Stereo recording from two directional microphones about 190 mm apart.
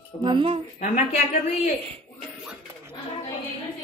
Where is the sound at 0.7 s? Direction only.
40° left (ahead or behind).